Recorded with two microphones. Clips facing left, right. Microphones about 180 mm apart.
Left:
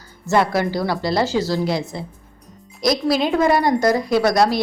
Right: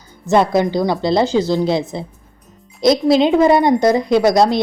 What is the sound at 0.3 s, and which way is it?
A woman's voice, 20° right (ahead or behind).